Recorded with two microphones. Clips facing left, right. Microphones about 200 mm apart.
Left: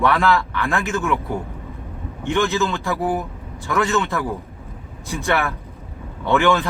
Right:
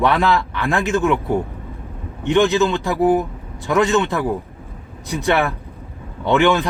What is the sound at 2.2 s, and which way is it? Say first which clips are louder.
Speech: right 5 dB; 20° right (ahead or behind).